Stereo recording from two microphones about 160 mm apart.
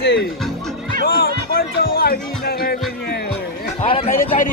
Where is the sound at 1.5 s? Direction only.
70° left (ahead or behind).